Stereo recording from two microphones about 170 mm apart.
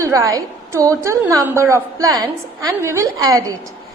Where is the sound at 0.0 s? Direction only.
20° right (ahead or behind).